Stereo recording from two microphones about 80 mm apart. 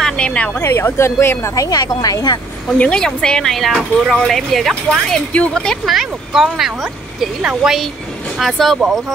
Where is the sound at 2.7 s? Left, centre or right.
Centre.